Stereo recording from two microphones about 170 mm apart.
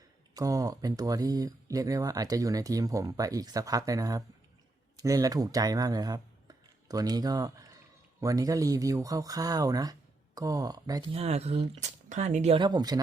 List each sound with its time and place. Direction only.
0.3 s speech: 20° right (ahead or behind)
11.1 s speech: 35° right (ahead or behind)
12.5 s speech: 25° right (ahead or behind)